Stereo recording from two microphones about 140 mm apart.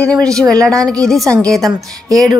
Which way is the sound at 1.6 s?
25° right (ahead or behind).